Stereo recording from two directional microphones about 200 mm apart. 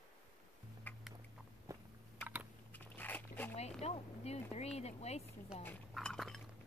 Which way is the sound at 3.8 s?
30° left (ahead or behind).